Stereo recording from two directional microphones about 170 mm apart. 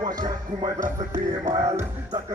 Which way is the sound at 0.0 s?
25° right (ahead or behind).